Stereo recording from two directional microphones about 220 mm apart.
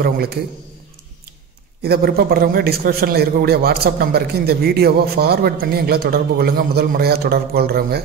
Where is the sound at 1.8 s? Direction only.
45° right (ahead or behind).